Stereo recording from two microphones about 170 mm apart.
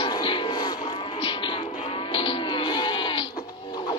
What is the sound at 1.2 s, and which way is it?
Music, 30° left (ahead or behind).